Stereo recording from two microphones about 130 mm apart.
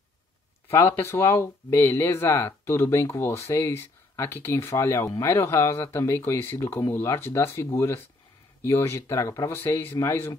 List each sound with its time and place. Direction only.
0.7 s speech: 20° left (ahead or behind)